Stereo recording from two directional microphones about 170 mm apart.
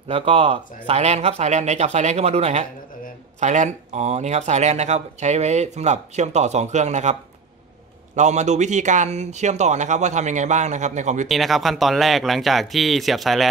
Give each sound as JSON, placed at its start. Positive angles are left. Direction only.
{"t": 0.1, "sound": "speech", "side_deg": -35}
{"t": 8.2, "sound": "speech", "side_deg": -45}
{"t": 11.2, "sound": "speech", "side_deg": 0}